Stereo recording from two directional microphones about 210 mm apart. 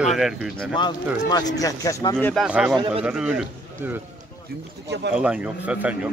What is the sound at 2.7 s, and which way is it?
Speech, 20° right (ahead or behind).